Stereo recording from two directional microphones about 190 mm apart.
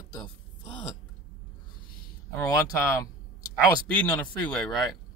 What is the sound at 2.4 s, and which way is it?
Speech, 15° left (ahead or behind).